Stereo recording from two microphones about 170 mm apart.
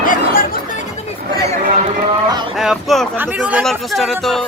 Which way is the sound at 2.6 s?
Centre (ahead or behind).